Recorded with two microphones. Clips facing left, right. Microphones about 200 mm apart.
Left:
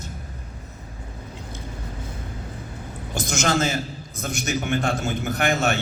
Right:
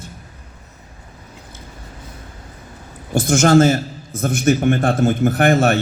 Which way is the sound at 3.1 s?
50° right (ahead or behind).